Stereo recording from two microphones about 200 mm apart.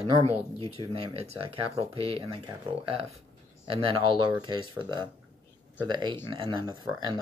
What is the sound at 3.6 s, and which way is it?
Speech, 25° right (ahead or behind).